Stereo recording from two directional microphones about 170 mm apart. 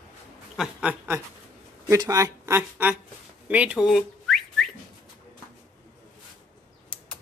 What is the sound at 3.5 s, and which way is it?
Whistling, 5° right (ahead or behind).